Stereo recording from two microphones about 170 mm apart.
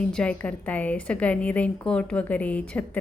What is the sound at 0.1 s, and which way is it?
A woman's voice, 5° left (ahead or behind).